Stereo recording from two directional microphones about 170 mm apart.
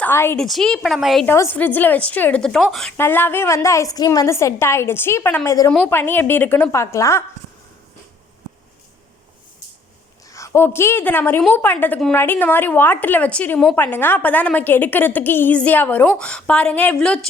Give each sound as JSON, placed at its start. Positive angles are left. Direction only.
{"t": 0.0, "sound": "a woman's voice", "side_deg": 15}
{"t": 0.3, "sound": "a woman's voice", "side_deg": 0}
{"t": 1.3, "sound": "a woman's voice", "side_deg": 15}
{"t": 3.0, "sound": "a woman's voice", "side_deg": 10}
{"t": 10.2, "sound": "a woman's voice", "side_deg": 15}